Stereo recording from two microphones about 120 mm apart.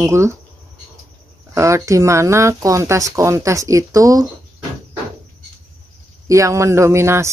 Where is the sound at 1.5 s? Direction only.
25° right (ahead or behind).